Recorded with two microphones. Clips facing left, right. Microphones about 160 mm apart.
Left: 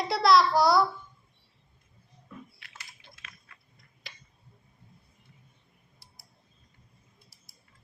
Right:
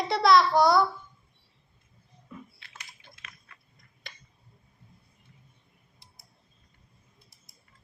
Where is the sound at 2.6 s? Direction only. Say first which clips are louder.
Even; 25° right (ahead or behind).